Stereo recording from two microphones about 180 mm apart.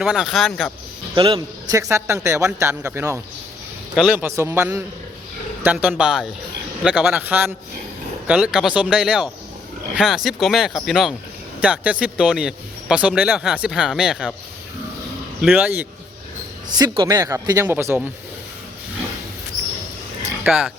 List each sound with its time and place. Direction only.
0.0 s speech: centre (ahead or behind)
1.1 s a man's voice: 30° right (ahead or behind)
1.7 s speech: 15° right (ahead or behind)
15.4 s speech: 5° right (ahead or behind)
16.6 s speech: 20° right (ahead or behind)
20.4 s speech: 5° right (ahead or behind)